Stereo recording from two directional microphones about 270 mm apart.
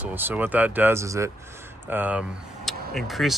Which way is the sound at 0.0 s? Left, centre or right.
Centre.